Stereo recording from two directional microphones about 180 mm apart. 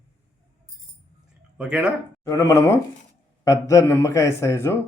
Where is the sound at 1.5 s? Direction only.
5° right (ahead or behind).